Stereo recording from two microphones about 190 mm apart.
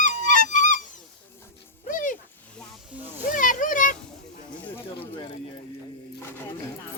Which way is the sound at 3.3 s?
45° left (ahead or behind).